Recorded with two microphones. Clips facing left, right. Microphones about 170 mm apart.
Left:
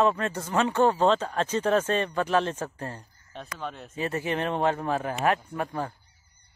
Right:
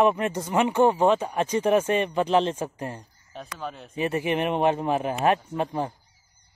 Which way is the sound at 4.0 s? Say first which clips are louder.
Right 4 dB; 20° right (ahead or behind).